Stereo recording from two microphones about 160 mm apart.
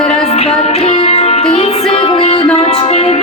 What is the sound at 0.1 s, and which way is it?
Music, 40° left (ahead or behind).